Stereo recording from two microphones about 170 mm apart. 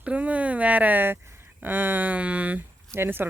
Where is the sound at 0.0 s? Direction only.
10° right (ahead or behind).